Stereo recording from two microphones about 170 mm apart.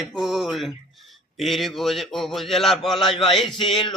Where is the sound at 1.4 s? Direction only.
Centre (ahead or behind).